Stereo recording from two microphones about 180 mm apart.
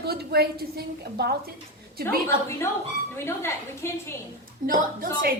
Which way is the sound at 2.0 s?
15° left (ahead or behind).